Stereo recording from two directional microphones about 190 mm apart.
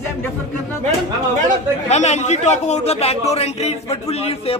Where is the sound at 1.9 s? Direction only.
35° left (ahead or behind).